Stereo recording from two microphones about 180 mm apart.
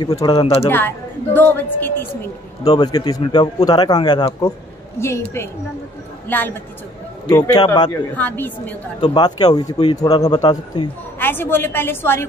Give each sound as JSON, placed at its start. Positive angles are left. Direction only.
{"t": 0.0, "sound": "a man's voice", "side_deg": 25}
{"t": 0.7, "sound": "a woman's voice", "side_deg": 10}
{"t": 2.7, "sound": "a man's voice", "side_deg": 25}
{"t": 6.2, "sound": "a woman's voice", "side_deg": 10}
{"t": 7.2, "sound": "a man's voice", "side_deg": 20}
{"t": 8.2, "sound": "a woman's voice", "side_deg": 10}
{"t": 9.0, "sound": "a man's voice", "side_deg": 25}
{"t": 11.1, "sound": "a woman's voice", "side_deg": 10}